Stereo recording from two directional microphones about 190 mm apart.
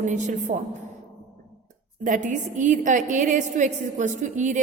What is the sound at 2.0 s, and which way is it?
A woman's voice, 40° right (ahead or behind).